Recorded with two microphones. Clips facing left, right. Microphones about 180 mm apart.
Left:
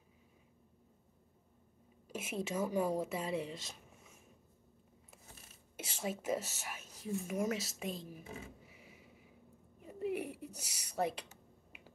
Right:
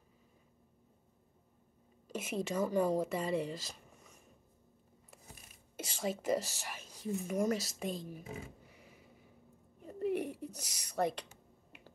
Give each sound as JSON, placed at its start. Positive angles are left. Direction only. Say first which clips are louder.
{"t": 2.0, "sound": "speech", "louder": "right 3 dB", "side_deg": 5}
{"t": 5.8, "sound": "speech", "louder": "right 3 dB", "side_deg": 5}
{"t": 8.6, "sound": "a sound", "louder": "even", "side_deg": 5}